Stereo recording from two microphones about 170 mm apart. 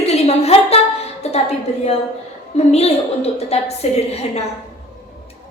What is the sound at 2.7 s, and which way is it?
Speech, 40° left (ahead or behind).